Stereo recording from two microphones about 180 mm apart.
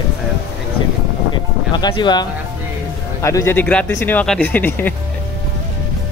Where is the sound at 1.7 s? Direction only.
25° left (ahead or behind).